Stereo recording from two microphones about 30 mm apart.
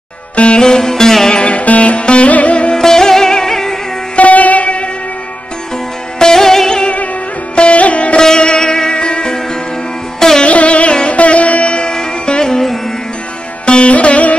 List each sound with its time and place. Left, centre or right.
0.6 s music: centre
1.3 s music: left
1.6 s music: left
2.7 s sitar: centre
4.2 s music: left
6.1 s sitar: centre
7.7 s music: left
8.2 s sitar: left
8.9 s music: left
10.4 s music: left
12.3 s music: left
13.7 s music: left
13.9 s music: left